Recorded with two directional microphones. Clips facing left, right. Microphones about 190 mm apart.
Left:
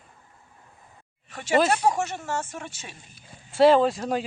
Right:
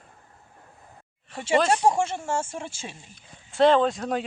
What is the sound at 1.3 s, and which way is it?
A woman's voice, 25° right (ahead or behind).